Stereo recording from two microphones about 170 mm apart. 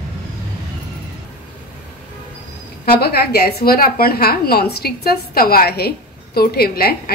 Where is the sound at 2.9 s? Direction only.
65° left (ahead or behind).